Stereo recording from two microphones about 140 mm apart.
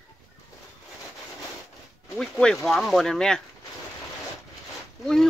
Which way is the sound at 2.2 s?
5° left (ahead or behind).